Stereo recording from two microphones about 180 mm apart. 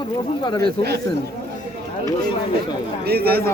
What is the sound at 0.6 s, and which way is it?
Speech, 60° right (ahead or behind).